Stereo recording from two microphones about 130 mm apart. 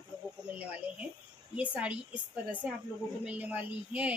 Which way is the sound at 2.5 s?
10° right (ahead or behind).